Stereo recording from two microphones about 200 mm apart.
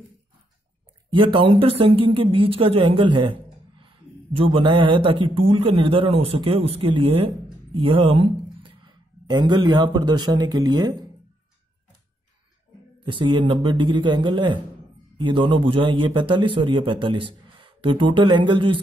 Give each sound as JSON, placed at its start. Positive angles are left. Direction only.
{"t": 1.1, "sound": "a man's voice", "side_deg": -25}
{"t": 13.0, "sound": "a man's voice", "side_deg": -25}